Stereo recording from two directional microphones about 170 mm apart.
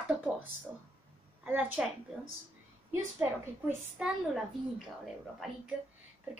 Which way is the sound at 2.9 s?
15° right (ahead or behind).